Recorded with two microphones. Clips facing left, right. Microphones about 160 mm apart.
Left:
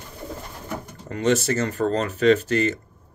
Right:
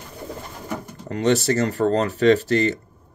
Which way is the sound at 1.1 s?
35° right (ahead or behind).